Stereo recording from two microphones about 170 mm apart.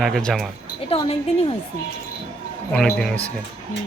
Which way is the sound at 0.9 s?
35° left (ahead or behind).